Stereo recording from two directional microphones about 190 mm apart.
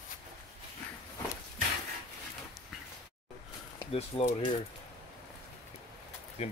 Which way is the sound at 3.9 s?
35° left (ahead or behind).